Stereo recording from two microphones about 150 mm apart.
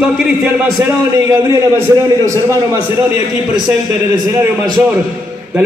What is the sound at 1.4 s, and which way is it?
Speech, 20° right (ahead or behind).